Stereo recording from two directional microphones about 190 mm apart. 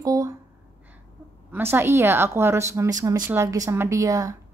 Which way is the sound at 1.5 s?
10° right (ahead or behind).